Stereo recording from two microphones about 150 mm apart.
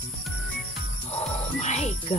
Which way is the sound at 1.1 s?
50° left (ahead or behind).